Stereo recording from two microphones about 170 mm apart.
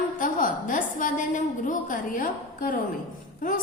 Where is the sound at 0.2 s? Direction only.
50° left (ahead or behind).